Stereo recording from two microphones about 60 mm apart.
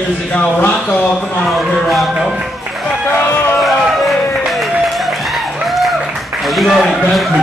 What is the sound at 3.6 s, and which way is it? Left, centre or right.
Music, centre.